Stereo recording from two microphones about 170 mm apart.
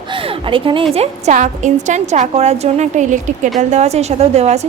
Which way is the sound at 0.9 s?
40° right (ahead or behind).